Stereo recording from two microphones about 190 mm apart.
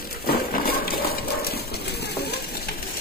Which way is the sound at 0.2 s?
50° left (ahead or behind).